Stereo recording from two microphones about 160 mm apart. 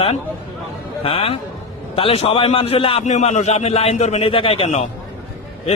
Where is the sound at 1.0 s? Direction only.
35° left (ahead or behind).